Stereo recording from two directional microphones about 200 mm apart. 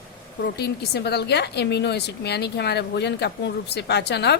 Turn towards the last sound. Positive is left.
turn(degrees=55)  # may be behind; listen again after turning